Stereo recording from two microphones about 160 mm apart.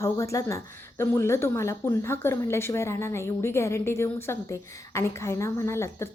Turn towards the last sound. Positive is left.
turn(degrees=15)  # may be behind; listen again after turning